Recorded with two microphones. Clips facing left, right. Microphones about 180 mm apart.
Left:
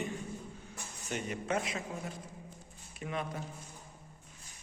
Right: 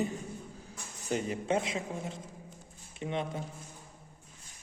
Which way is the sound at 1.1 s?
30° right (ahead or behind).